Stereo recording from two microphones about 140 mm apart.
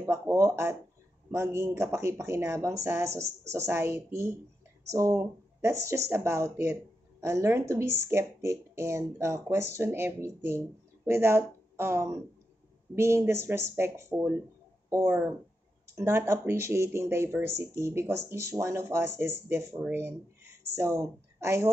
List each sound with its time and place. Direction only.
0.0 s speech: 20° right (ahead or behind)